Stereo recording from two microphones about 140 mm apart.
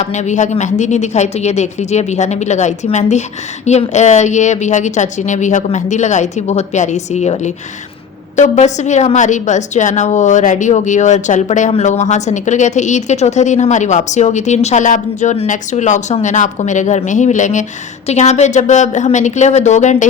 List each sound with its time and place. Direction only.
0.0 s a woman's voice: 55° left (ahead or behind)